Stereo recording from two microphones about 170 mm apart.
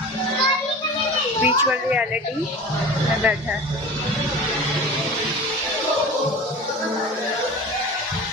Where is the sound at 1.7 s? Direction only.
5° right (ahead or behind).